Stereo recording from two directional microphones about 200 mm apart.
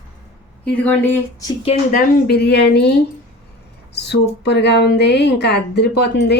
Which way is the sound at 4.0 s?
55° left (ahead or behind).